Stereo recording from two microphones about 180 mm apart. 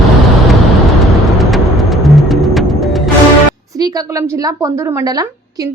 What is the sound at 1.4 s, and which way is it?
Music, centre (ahead or behind).